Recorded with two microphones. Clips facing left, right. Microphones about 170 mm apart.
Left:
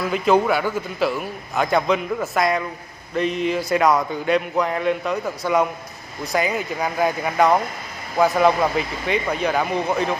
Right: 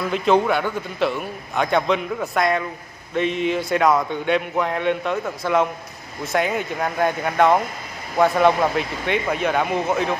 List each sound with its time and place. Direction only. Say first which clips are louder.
0.0 s a man's voice: even; centre (ahead or behind)